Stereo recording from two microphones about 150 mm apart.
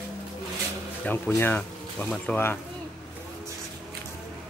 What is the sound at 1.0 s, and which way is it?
Speech, 10° left (ahead or behind).